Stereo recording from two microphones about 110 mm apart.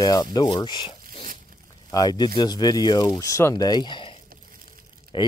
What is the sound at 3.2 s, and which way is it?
Speech, 30° left (ahead or behind).